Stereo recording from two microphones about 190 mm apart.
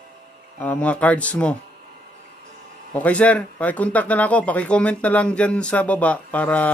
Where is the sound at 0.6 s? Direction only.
10° left (ahead or behind).